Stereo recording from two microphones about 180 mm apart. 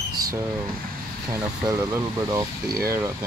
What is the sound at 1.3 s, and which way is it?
Speech, 20° right (ahead or behind).